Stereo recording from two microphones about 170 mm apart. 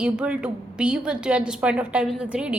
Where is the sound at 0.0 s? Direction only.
5° right (ahead or behind).